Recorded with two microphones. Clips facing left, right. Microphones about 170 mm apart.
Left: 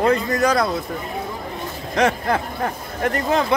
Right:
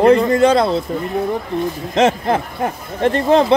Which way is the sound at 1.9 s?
25° right (ahead or behind).